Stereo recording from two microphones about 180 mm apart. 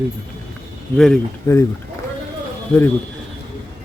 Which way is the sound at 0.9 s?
5° left (ahead or behind).